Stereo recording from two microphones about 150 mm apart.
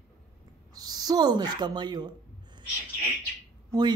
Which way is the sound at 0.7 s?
25° right (ahead or behind).